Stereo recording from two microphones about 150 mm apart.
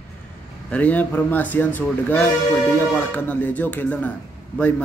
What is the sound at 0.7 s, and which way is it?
A man's voice, 10° left (ahead or behind).